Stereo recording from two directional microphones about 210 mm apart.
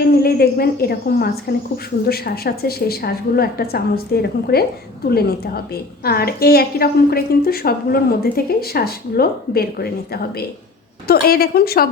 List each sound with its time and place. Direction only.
0.2 s a woman's voice: 45° left (ahead or behind)
6.0 s a woman's voice: 45° left (ahead or behind)